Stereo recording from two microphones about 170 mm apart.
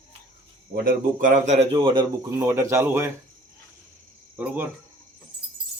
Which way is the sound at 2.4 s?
15° right (ahead or behind).